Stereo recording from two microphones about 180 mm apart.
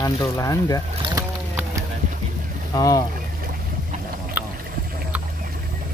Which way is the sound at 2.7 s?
20° left (ahead or behind).